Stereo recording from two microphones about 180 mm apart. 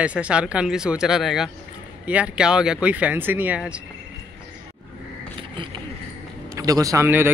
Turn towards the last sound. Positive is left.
turn(degrees=-15)  # may be behind; listen again after turning